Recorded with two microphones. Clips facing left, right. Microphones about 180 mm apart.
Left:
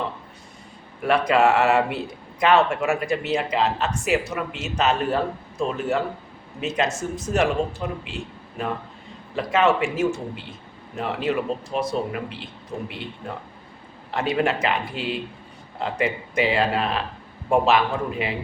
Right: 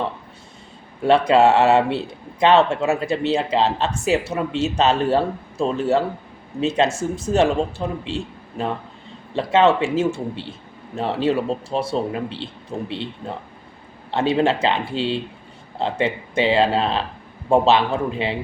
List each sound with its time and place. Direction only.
1.0 s a man's voice: 25° right (ahead or behind)